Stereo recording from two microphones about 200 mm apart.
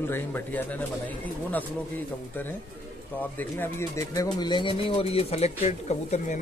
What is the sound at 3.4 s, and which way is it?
Speech, 10° left (ahead or behind).